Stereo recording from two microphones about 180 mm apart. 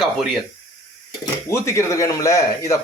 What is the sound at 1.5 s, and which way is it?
Speech, 15° left (ahead or behind).